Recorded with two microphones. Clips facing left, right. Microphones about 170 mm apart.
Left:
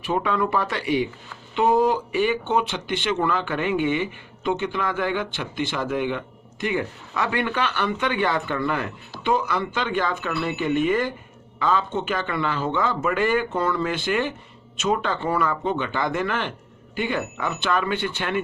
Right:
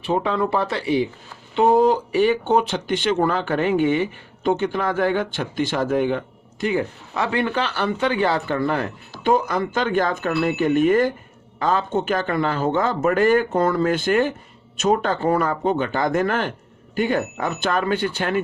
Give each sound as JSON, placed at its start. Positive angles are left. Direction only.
{"t": 0.0, "sound": "speech", "side_deg": -30}